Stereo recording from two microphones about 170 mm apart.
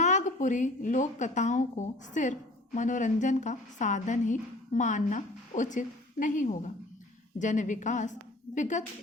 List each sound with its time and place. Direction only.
0.0 s a woman's voice: 45° left (ahead or behind)